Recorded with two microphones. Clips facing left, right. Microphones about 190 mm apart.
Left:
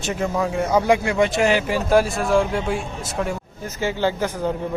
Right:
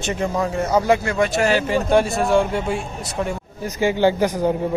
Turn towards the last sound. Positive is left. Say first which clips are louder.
# right 5 dB
turn(degrees=-15)  # may be behind; listen again after turning